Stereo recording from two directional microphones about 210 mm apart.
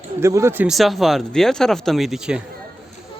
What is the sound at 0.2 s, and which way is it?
Speech, 15° right (ahead or behind).